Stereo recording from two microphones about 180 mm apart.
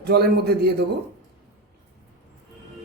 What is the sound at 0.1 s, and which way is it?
Speech, 60° right (ahead or behind).